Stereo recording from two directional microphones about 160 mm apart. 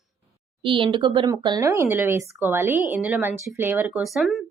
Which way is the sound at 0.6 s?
30° right (ahead or behind).